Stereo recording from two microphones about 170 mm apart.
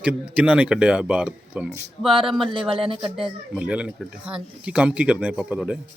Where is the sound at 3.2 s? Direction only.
5° right (ahead or behind).